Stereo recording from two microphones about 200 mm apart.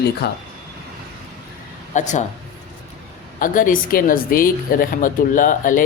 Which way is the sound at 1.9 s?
35° left (ahead or behind).